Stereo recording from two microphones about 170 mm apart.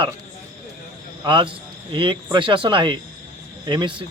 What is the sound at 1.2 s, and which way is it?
A man's voice, 30° right (ahead or behind).